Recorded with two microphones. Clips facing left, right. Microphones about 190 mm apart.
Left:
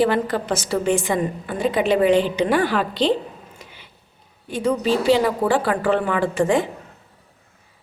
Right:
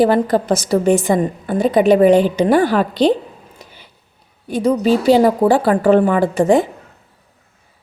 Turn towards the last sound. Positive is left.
turn(degrees=-40)  # may be behind; listen again after turning